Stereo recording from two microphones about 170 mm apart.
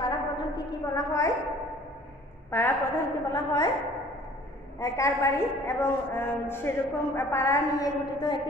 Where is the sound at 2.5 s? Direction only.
15° left (ahead or behind).